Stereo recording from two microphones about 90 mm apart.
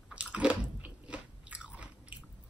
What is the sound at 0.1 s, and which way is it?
Biting, 15° right (ahead or behind).